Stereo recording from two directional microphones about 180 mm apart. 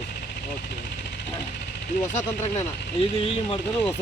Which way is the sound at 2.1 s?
40° left (ahead or behind).